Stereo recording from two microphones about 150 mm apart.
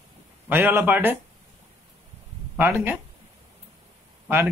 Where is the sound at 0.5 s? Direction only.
15° right (ahead or behind).